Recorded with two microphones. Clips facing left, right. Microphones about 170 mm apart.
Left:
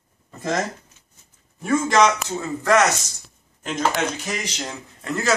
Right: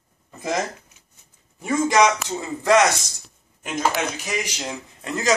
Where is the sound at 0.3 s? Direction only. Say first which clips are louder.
Left 1 dB; 10° right (ahead or behind).